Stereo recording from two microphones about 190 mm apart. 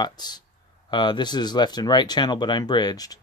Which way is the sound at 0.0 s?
20° left (ahead or behind).